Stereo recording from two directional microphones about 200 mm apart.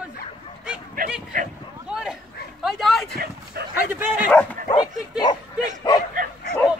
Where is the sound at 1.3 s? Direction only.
40° right (ahead or behind).